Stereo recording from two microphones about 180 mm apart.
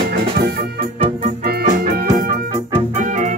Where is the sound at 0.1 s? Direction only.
65° right (ahead or behind).